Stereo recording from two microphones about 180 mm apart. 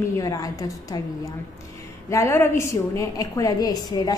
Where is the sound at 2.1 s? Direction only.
15° left (ahead or behind).